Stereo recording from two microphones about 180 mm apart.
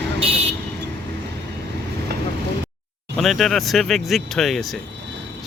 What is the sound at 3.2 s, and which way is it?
Speech, centre (ahead or behind).